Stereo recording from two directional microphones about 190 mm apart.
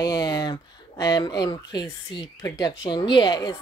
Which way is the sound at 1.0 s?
20° left (ahead or behind).